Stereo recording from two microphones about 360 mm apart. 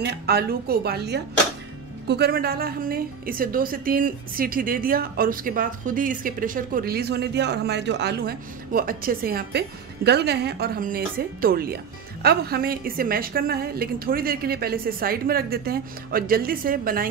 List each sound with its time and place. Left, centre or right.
0.0 s a woman's voice: right